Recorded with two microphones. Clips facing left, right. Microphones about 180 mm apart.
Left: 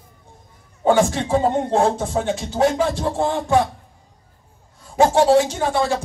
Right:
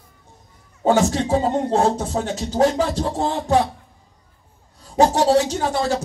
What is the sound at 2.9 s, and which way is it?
Speech, 50° left (ahead or behind).